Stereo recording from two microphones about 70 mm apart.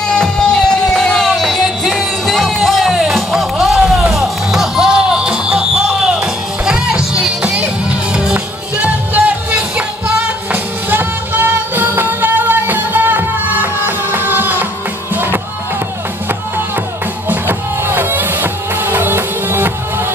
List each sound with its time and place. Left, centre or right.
0.0 s music: centre; by 14.7 s right
17.3 s music: right